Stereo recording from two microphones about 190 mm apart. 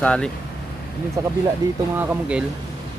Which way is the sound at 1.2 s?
20° right (ahead or behind).